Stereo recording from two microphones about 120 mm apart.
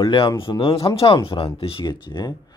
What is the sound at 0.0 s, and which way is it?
Speech, 40° left (ahead or behind).